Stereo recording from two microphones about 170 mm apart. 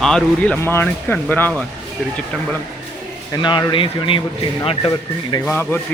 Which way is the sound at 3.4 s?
30° left (ahead or behind).